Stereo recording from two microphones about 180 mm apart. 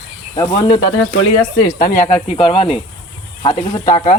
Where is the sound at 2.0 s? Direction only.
40° left (ahead or behind).